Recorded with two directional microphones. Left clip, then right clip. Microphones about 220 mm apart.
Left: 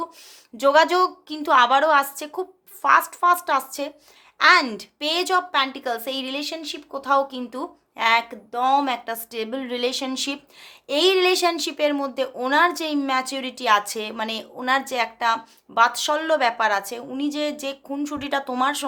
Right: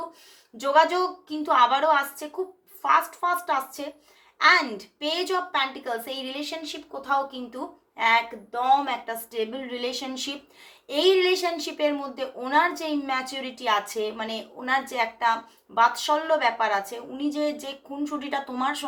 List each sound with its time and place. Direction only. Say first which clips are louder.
0.5 s a child's voice: left 4 dB; 50° left (ahead or behind)